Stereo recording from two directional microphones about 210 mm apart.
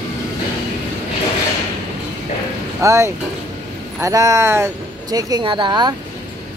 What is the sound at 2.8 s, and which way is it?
Speech, 15° right (ahead or behind).